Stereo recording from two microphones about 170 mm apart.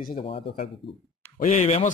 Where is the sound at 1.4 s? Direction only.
45° left (ahead or behind).